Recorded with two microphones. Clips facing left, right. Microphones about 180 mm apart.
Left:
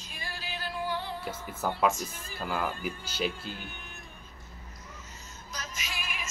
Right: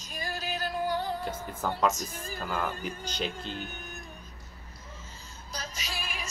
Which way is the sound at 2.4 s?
Centre (ahead or behind).